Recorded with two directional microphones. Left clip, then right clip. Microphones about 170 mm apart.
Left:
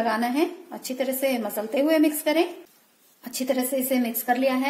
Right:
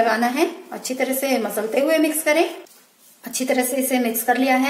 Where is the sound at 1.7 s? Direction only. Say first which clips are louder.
Right 2 dB; 35° left (ahead or behind).